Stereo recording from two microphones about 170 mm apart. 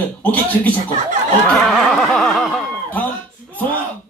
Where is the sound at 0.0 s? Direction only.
10° left (ahead or behind).